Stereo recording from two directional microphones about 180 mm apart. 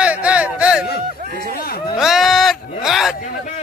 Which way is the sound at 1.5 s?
55° left (ahead or behind).